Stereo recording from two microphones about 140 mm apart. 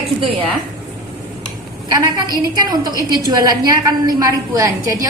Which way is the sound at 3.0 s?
25° right (ahead or behind).